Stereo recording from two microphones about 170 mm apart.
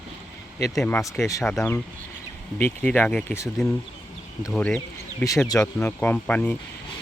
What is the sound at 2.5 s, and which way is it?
Speech, 10° left (ahead or behind).